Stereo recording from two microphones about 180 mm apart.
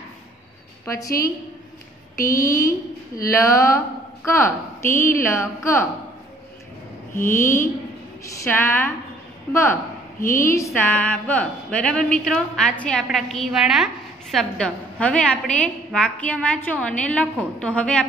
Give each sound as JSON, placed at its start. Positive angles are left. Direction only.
{"t": 0.8, "sound": "a woman's voice", "side_deg": 20}
{"t": 2.1, "sound": "a woman's voice", "side_deg": 15}
{"t": 7.2, "sound": "a woman's voice", "side_deg": 15}